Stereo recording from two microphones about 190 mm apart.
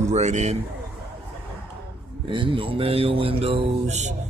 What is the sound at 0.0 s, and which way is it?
Speech, 35° right (ahead or behind).